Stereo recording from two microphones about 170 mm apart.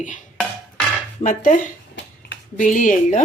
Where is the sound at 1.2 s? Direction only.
50° left (ahead or behind).